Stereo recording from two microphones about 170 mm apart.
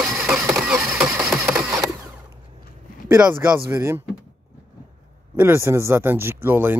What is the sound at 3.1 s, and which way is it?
Speech, 10° right (ahead or behind).